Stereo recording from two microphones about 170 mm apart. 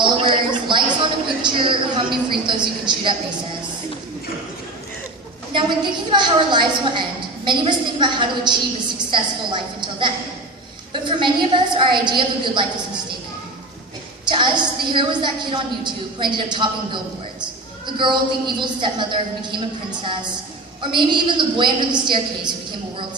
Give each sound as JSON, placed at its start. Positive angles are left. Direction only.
{"t": 0.0, "sound": "a sound", "side_deg": -30}
{"t": 1.4, "sound": "a woman's voice", "side_deg": -30}
{"t": 5.5, "sound": "a woman's voice", "side_deg": -30}
{"t": 14.3, "sound": "a woman's voice", "side_deg": -25}
{"t": 20.8, "sound": "a woman's voice", "side_deg": -30}